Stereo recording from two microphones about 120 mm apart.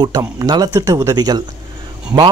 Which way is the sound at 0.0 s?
30° right (ahead or behind).